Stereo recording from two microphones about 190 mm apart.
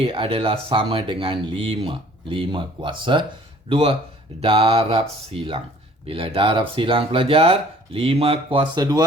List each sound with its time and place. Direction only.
0.0 s speech: 30° right (ahead or behind)